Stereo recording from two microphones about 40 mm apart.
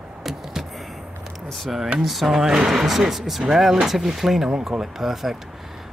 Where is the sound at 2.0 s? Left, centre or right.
Centre.